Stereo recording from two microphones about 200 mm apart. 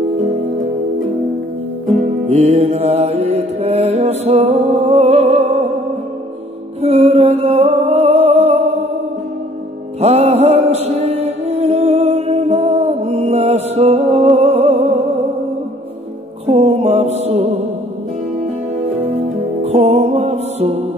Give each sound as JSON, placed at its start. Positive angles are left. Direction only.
{"t": 2.2, "sound": "music", "side_deg": -30}
{"t": 6.8, "sound": "music", "side_deg": -30}
{"t": 9.9, "sound": "music", "side_deg": -30}
{"t": 16.4, "sound": "music", "side_deg": -30}
{"t": 19.6, "sound": "music", "side_deg": -30}